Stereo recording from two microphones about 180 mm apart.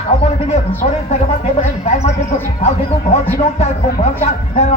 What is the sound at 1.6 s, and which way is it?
A man's voice, 40° left (ahead or behind).